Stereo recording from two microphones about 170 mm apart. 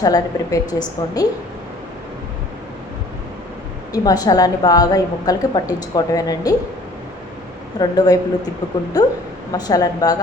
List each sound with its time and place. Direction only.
0.0 s a woman's voice: 20° left (ahead or behind)
3.9 s a woman's voice: 20° left (ahead or behind)
7.8 s a woman's voice: 20° left (ahead or behind)
9.5 s a woman's voice: 20° left (ahead or behind)